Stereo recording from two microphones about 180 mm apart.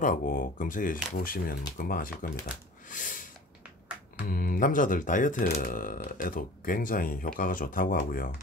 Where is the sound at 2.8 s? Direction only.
50° left (ahead or behind).